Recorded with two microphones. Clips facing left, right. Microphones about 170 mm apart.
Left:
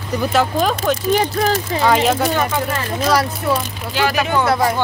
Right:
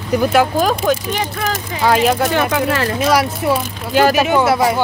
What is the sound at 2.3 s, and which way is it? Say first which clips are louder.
Speech: right 3 dB; 80° right.